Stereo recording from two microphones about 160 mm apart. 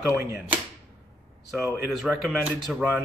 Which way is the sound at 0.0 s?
10° right (ahead or behind).